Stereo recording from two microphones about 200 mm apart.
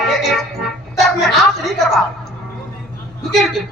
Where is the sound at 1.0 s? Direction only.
Centre (ahead or behind).